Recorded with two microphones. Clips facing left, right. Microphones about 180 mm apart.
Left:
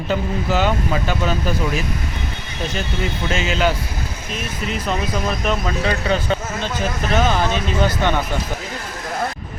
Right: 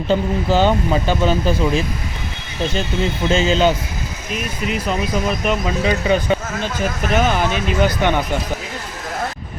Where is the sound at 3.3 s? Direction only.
30° right (ahead or behind).